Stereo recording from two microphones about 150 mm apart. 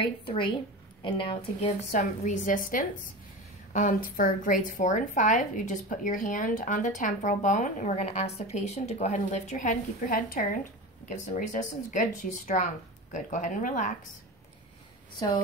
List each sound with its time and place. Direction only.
0.3 s a woman's voice: 35° left (ahead or behind)
1.9 s a woman's voice: 55° left (ahead or behind)